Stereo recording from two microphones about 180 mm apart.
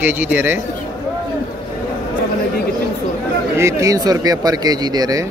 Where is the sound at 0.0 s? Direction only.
10° right (ahead or behind).